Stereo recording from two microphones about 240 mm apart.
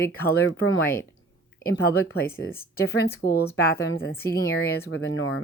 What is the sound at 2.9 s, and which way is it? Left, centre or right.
Speech, left.